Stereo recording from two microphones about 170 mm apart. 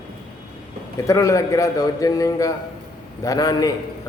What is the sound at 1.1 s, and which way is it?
A man's voice, 20° left (ahead or behind).